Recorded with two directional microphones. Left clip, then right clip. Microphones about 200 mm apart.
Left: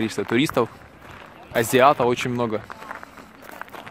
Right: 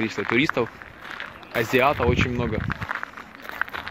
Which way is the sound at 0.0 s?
25° left (ahead or behind).